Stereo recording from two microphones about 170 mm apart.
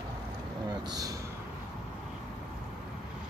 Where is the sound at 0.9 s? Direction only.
20° right (ahead or behind).